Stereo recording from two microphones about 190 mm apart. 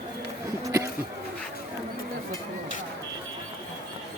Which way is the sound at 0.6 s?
15° right (ahead or behind).